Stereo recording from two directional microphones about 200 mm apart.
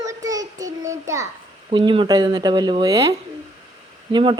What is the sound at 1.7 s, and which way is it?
Speech, 25° right (ahead or behind).